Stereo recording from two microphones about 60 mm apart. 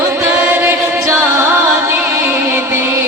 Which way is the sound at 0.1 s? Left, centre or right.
Right.